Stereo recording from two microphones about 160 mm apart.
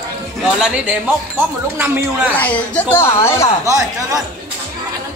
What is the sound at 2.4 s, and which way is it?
A woman's voice, 10° left (ahead or behind).